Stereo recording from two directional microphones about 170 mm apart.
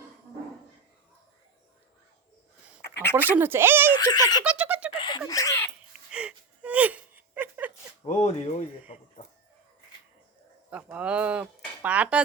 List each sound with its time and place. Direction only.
3.2 s speech: 10° right (ahead or behind)
3.9 s speech: 25° left (ahead or behind)
4.4 s giggle: 5° right (ahead or behind)
4.9 s a sound: 25° left (ahead or behind)
5.3 s speech: 20° left (ahead or behind)
6.1 s whimper: 5° right (ahead or behind)
8.0 s speech: 40° left (ahead or behind)
10.7 s speech: 10° right (ahead or behind)